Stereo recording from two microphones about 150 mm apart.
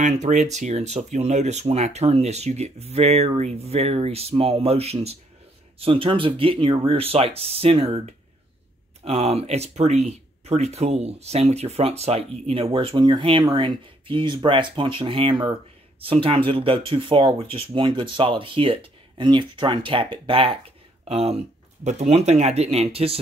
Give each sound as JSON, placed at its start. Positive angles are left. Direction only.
{"t": 0.0, "sound": "speech", "side_deg": -50}